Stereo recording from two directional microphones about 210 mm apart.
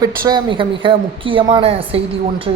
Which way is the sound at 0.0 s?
20° right (ahead or behind).